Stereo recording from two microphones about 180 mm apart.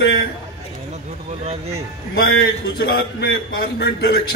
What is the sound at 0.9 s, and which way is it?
Speech, 35° right (ahead or behind).